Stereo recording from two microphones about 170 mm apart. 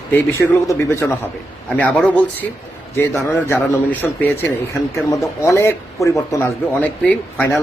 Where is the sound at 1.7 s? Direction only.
5° left (ahead or behind).